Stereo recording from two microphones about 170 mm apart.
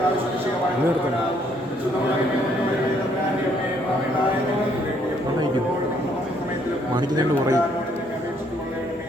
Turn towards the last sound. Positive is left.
turn(degrees=-20)  # may be behind; listen again after turning